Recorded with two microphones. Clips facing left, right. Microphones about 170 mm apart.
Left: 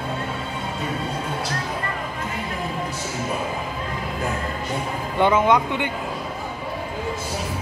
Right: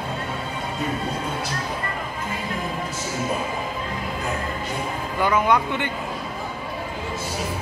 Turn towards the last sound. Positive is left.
turn(degrees=20)  # may be behind; listen again after turning